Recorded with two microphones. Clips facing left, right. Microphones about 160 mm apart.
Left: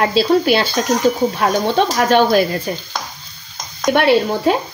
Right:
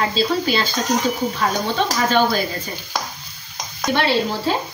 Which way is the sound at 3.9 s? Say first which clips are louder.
Left 5 dB; 65° left (ahead or behind).